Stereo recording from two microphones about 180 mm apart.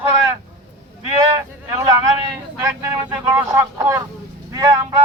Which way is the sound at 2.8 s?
15° right (ahead or behind).